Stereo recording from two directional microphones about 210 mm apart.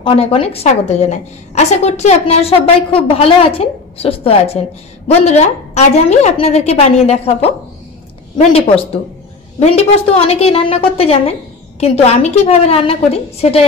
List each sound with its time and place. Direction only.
0.0 s a woman's voice: 25° left (ahead or behind)